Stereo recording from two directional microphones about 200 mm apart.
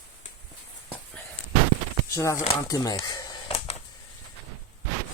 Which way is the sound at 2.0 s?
15° left (ahead or behind).